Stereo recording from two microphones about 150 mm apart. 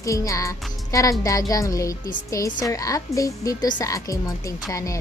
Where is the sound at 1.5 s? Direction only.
20° left (ahead or behind).